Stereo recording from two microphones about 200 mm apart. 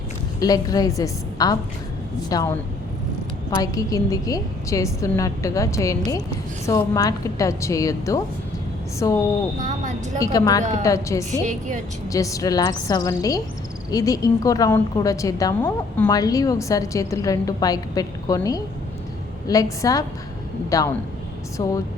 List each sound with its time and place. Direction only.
0.3 s a woman's voice: 20° left (ahead or behind)
3.6 s a woman's voice: 15° left (ahead or behind)
9.6 s speech: 35° right (ahead or behind)
10.2 s a woman's voice: 20° left (ahead or behind)
10.6 s speech: 35° right (ahead or behind)
10.8 s a woman's voice: 15° left (ahead or behind)